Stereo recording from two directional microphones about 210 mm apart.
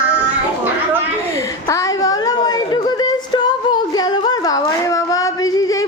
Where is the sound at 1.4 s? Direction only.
15° left (ahead or behind).